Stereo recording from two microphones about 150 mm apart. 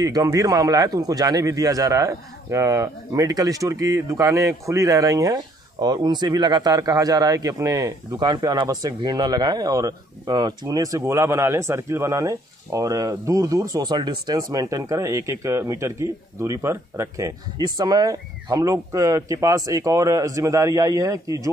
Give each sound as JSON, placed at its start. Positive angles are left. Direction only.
{"t": 0.0, "sound": "a man's voice", "side_deg": -25}